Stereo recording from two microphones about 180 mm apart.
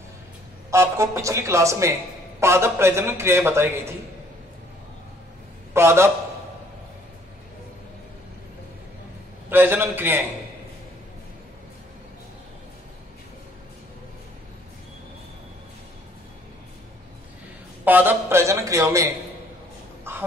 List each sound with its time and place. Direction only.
0.7 s a man's voice: 15° right (ahead or behind)
5.7 s a man's voice: 15° right (ahead or behind)
9.5 s a man's voice: 10° right (ahead or behind)
17.8 s a man's voice: 10° right (ahead or behind)
20.1 s crow: 10° right (ahead or behind)